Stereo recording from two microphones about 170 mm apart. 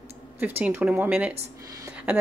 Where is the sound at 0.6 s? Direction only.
10° right (ahead or behind).